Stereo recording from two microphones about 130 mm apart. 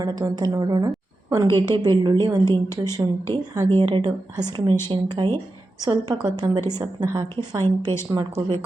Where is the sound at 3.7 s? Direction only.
40° right (ahead or behind).